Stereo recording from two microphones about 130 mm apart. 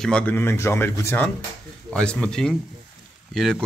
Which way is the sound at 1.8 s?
5° left (ahead or behind).